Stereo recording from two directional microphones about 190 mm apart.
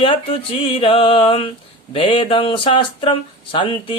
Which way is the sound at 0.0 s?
30° left (ahead or behind).